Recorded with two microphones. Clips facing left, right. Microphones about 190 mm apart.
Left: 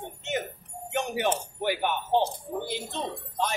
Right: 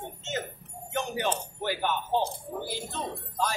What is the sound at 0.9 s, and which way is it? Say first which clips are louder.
Speech: left 2 dB; 20° left (ahead or behind).